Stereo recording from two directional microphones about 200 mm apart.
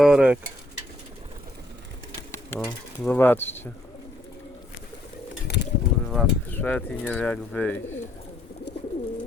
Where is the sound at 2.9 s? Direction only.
10° left (ahead or behind).